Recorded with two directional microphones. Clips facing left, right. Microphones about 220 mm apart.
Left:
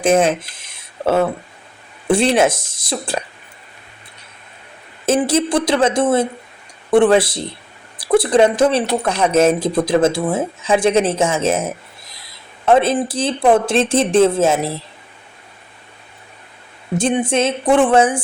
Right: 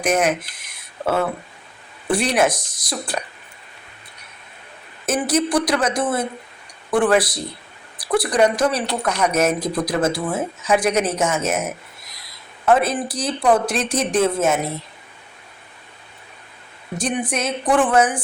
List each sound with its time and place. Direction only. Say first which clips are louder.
0.0 s speech: left 5 dB; 25° left (ahead or behind)
5.0 s speech: left 4 dB; 25° left (ahead or behind)
17.0 s speech: left 6 dB; 25° left (ahead or behind)